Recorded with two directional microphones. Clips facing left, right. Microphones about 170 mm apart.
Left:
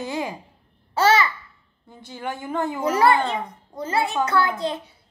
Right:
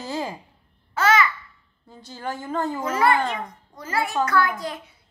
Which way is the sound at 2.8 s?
35° left (ahead or behind).